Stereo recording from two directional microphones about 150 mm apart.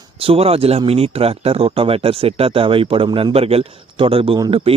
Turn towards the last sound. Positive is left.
turn(degrees=-35)  # may be behind; listen again after turning